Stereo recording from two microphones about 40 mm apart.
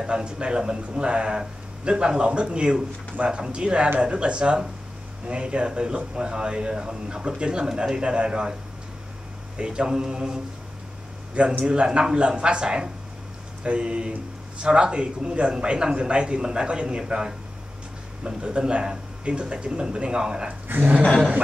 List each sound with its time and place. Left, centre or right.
0.0 s speech: right
9.6 s speech: right
11.6 s speech: right
20.6 s a sound: right